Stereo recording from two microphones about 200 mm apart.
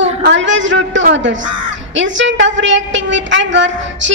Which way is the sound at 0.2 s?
65° right (ahead or behind).